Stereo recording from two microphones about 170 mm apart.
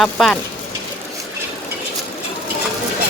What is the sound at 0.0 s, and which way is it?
Speech, centre (ahead or behind).